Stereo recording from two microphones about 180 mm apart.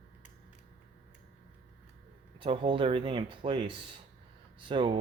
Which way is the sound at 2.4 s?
30° right (ahead or behind).